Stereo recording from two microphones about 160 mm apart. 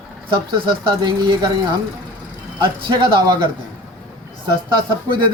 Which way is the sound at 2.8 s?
30° right (ahead or behind).